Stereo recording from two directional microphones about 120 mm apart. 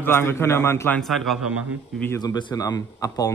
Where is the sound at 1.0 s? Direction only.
Centre (ahead or behind).